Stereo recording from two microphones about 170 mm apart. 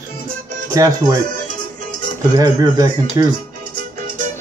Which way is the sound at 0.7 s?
20° right (ahead or behind).